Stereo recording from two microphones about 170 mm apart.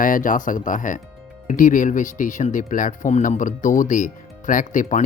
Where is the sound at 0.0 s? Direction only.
50° left (ahead or behind).